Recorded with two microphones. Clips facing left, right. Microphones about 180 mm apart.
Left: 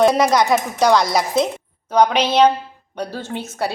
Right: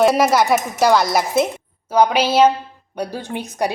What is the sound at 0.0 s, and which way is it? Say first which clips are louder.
A woman's voice: even; 5° right (ahead or behind).